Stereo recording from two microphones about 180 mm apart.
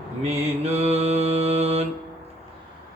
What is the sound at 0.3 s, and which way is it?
Mantra, 35° right (ahead or behind).